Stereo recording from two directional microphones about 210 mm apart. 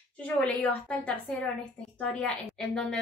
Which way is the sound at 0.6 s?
5° left (ahead or behind).